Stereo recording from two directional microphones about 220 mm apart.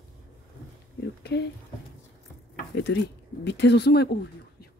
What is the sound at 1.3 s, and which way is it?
Speech, 50° left (ahead or behind).